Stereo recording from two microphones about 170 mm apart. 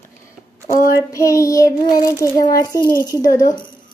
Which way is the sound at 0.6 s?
55° left (ahead or behind).